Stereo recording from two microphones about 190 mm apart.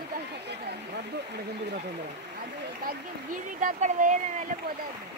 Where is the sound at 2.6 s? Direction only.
45° right (ahead or behind).